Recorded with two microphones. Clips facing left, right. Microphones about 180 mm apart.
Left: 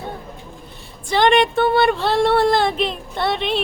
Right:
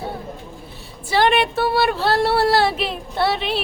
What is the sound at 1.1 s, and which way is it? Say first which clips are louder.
Speech: left 2 dB; 5° right (ahead or behind).